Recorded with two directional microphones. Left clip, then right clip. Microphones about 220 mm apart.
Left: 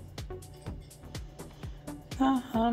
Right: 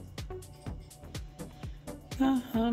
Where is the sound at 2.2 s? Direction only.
20° right (ahead or behind).